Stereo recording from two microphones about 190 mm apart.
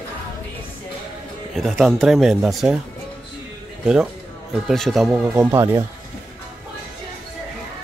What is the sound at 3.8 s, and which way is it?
Speech, 5° right (ahead or behind).